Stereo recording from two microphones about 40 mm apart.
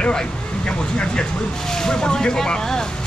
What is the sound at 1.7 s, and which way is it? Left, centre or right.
Speech, centre.